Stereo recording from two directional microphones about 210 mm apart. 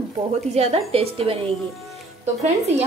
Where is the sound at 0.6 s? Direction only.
30° right (ahead or behind).